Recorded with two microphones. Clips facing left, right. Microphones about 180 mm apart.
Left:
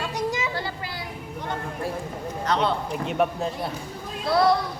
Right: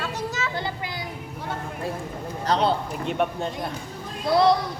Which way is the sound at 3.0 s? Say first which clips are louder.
Left 1 dB; centre (ahead or behind).